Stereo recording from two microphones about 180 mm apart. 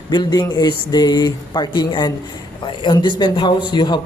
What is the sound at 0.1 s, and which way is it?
A man's voice, 25° left (ahead or behind).